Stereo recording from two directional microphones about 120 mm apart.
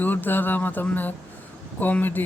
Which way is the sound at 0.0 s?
15° left (ahead or behind).